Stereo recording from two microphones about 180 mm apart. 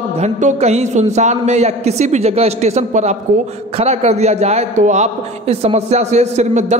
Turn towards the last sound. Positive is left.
turn(degrees=-40)  # may be behind; listen again after turning